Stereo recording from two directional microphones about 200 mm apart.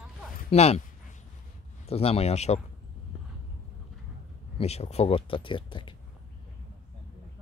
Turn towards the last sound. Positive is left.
turn(degrees=25)  # may be behind; listen again after turning